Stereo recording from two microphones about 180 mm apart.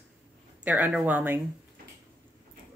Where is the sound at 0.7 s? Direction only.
10° right (ahead or behind).